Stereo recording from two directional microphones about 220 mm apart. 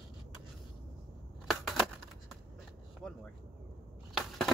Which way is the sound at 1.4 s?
Centre (ahead or behind).